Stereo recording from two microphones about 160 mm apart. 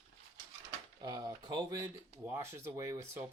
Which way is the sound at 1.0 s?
25° right (ahead or behind).